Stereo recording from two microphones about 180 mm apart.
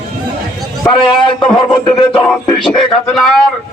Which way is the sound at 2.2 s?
Centre (ahead or behind).